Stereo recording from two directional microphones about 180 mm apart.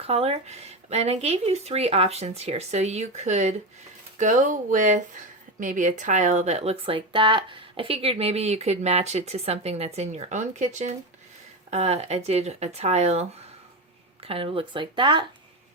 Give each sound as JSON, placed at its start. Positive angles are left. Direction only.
{"t": 0.0, "sound": "speech", "side_deg": -35}